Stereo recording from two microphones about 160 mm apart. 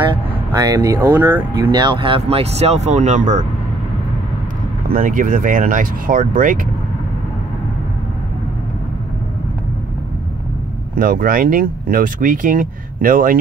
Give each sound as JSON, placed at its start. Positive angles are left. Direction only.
{"t": 0.1, "sound": "speech", "side_deg": -25}
{"t": 4.8, "sound": "speech", "side_deg": -55}
{"t": 11.0, "sound": "speech", "side_deg": -60}